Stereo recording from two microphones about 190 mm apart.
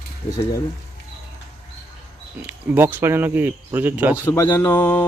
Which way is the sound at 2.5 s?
10° right (ahead or behind).